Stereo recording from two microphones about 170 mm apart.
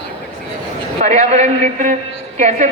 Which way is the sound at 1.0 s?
40° right (ahead or behind).